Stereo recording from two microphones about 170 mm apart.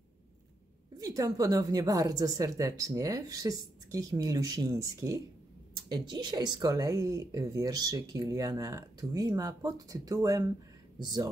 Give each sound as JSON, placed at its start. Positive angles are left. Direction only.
{"t": 0.9, "sound": "speech", "side_deg": -20}